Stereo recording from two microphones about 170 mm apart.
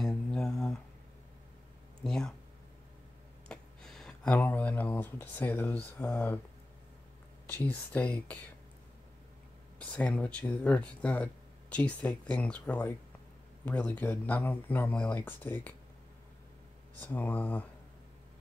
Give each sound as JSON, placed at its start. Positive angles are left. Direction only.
{"t": 0.0, "sound": "mantra", "side_deg": 5}
{"t": 2.0, "sound": "a sound", "side_deg": 5}
{"t": 3.4, "sound": "speech", "side_deg": 0}
{"t": 7.4, "sound": "speech", "side_deg": 10}
{"t": 9.8, "sound": "speech", "side_deg": 10}
{"t": 17.0, "sound": "speech", "side_deg": 10}